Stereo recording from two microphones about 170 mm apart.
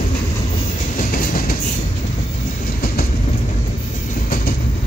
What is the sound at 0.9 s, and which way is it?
Train, 55° left (ahead or behind).